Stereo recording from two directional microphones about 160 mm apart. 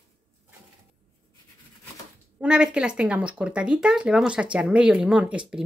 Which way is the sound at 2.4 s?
5° right (ahead or behind).